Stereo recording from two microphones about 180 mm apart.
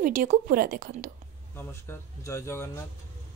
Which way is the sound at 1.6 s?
15° left (ahead or behind).